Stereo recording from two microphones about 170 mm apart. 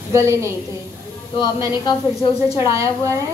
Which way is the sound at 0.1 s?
15° right (ahead or behind).